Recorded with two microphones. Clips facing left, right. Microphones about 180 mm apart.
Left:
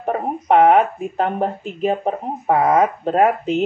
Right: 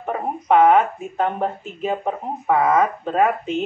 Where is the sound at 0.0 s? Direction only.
35° left (ahead or behind).